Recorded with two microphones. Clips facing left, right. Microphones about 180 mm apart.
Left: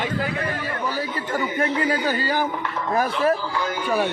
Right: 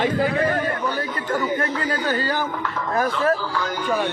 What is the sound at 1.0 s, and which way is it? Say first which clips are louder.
A man's voice: right 1 dB; 10° left (ahead or behind).